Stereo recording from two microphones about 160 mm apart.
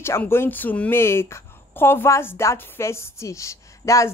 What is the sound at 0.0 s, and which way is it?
Speech, 15° left (ahead or behind).